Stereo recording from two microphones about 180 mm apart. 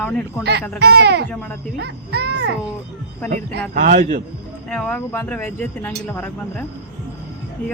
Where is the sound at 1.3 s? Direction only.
10° left (ahead or behind).